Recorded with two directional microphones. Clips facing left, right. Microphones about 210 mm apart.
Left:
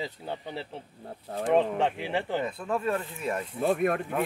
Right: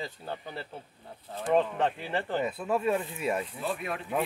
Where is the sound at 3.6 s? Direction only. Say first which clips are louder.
Left 8 dB; 50° left (ahead or behind).